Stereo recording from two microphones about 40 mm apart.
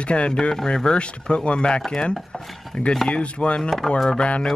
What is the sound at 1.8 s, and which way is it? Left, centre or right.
Chopping, centre.